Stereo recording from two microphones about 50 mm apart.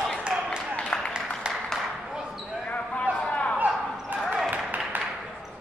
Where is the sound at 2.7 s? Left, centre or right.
Left.